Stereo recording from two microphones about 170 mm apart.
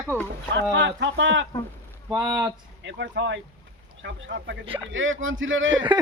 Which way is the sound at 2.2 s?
25° right (ahead or behind).